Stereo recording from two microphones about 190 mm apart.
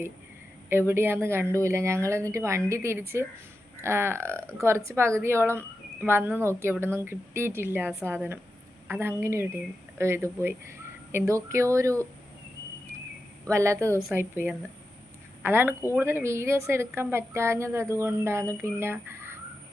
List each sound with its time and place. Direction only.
0.7 s a woman's voice: 10° right (ahead or behind)
13.4 s a woman's voice: 15° right (ahead or behind)